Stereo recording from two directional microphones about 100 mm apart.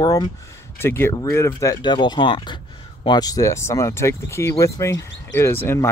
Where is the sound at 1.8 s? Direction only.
50° left (ahead or behind).